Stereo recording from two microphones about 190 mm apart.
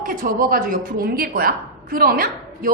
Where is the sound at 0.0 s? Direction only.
45° right (ahead or behind).